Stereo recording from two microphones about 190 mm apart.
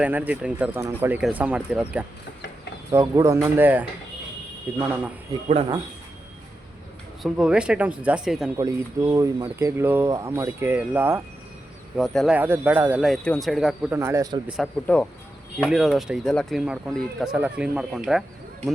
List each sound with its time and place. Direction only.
0.0 s speech: 10° right (ahead or behind)
5.3 s speech: 20° right (ahead or behind)
7.2 s speech: 5° right (ahead or behind)
8.5 s speech: 20° right (ahead or behind)
11.9 s speech: centre (ahead or behind)
14.0 s speech: 15° right (ahead or behind)
14.4 s speech: 5° right (ahead or behind)
14.9 s speech: 10° left (ahead or behind)